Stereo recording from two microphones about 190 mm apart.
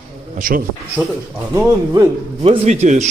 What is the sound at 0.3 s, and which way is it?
Speech, 45° right (ahead or behind).